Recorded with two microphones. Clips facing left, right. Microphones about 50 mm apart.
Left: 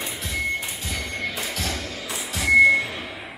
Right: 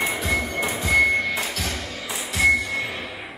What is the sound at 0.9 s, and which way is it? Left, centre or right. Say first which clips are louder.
Music: right 12 dB; right.